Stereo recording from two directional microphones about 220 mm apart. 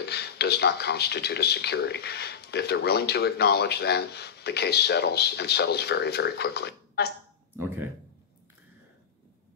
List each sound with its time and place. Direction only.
0.0 s speech: 50° left (ahead or behind)
7.6 s speech: 10° right (ahead or behind)